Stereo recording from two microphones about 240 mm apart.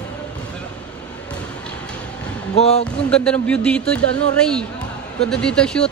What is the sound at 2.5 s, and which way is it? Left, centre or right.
Speech, left.